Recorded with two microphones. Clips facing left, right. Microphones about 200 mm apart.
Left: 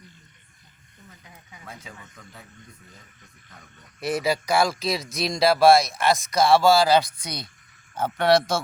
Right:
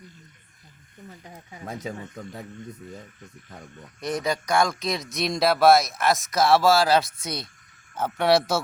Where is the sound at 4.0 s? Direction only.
5° left (ahead or behind).